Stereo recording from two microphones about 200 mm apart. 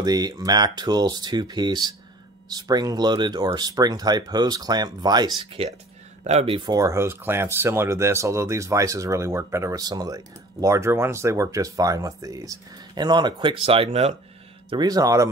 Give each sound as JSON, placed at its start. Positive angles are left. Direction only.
{"t": 0.0, "sound": "speech", "side_deg": -20}
{"t": 14.7, "sound": "speech", "side_deg": -20}